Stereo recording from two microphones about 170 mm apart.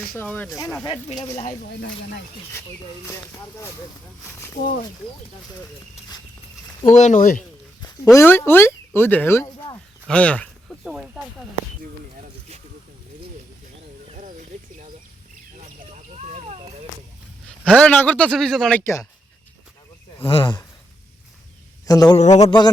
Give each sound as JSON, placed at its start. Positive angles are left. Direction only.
{"t": 0.1, "sound": "speech", "side_deg": 10}
{"t": 1.4, "sound": "speech", "side_deg": 50}
{"t": 6.9, "sound": "speech", "side_deg": 45}
{"t": 8.1, "sound": "speech", "side_deg": 15}
{"t": 10.1, "sound": "a sound", "side_deg": 5}
{"t": 14.1, "sound": "a sound", "side_deg": -45}
{"t": 17.7, "sound": "speech", "side_deg": 10}
{"t": 18.8, "sound": "speech", "side_deg": 15}
{"t": 20.2, "sound": "speech", "side_deg": 30}
{"t": 21.8, "sound": "speech", "side_deg": 25}
{"t": 22.2, "sound": "speech", "side_deg": 40}
{"t": 22.4, "sound": "speech", "side_deg": 25}